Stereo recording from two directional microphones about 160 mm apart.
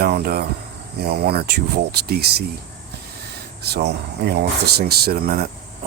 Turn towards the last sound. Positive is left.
turn(degrees=-65)  # may be behind; listen again after turning